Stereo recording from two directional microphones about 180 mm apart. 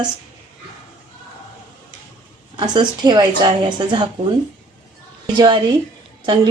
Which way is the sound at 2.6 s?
25° right (ahead or behind).